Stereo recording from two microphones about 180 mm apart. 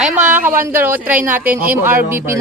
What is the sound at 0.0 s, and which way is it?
Speech, 10° right (ahead or behind).